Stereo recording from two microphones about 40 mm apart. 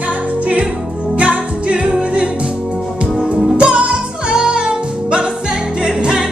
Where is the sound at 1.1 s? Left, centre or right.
Right.